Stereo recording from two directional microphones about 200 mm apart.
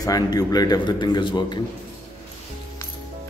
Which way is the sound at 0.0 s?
20° left (ahead or behind).